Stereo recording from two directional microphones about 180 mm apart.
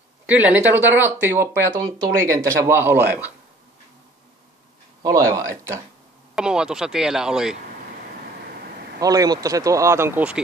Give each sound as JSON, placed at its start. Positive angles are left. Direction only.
{"t": 0.3, "sound": "speech", "side_deg": -10}
{"t": 5.0, "sound": "speech", "side_deg": -20}
{"t": 6.3, "sound": "speech", "side_deg": -5}
{"t": 9.0, "sound": "speech", "side_deg": -20}